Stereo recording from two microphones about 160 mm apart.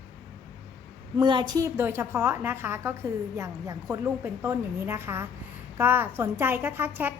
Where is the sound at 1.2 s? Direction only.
30° right (ahead or behind).